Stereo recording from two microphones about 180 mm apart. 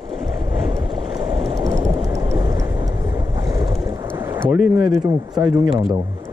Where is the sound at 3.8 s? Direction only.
20° right (ahead or behind).